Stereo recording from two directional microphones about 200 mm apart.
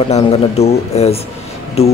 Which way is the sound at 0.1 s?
30° left (ahead or behind).